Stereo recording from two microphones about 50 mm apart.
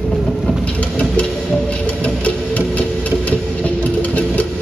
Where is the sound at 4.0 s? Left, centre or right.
Left.